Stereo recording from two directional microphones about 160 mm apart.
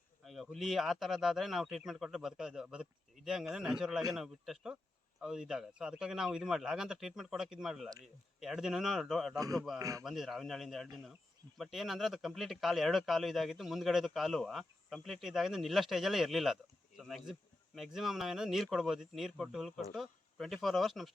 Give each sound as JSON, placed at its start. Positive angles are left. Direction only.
{"t": 0.3, "sound": "speech", "side_deg": 0}
{"t": 9.4, "sound": "a man's voice", "side_deg": -20}
{"t": 10.0, "sound": "speech", "side_deg": 0}